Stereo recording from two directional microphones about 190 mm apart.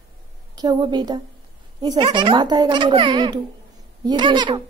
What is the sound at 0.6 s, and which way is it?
A child's voice, 20° right (ahead or behind).